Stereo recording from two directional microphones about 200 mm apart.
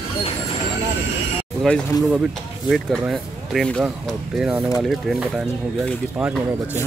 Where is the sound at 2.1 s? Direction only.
Centre (ahead or behind).